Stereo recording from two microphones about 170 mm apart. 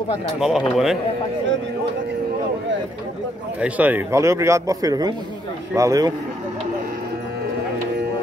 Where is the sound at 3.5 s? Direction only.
10° right (ahead or behind).